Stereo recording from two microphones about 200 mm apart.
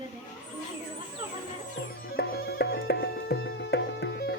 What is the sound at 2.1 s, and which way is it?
Music, 50° left (ahead or behind).